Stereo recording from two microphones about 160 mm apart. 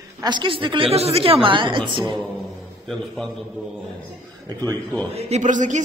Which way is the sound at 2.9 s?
Centre (ahead or behind).